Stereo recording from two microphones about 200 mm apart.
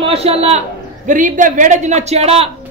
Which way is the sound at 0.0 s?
30° right (ahead or behind).